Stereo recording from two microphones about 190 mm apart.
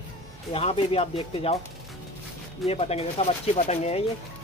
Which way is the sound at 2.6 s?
30° left (ahead or behind).